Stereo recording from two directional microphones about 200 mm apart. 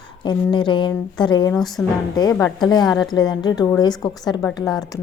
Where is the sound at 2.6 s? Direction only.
20° left (ahead or behind).